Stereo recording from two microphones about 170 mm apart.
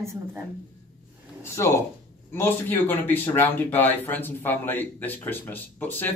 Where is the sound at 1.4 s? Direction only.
15° left (ahead or behind).